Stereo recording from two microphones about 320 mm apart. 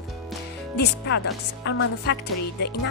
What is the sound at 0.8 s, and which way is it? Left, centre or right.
Speech, left.